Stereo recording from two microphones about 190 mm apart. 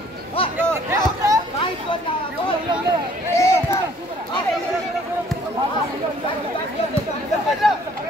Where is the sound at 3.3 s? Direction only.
15° left (ahead or behind).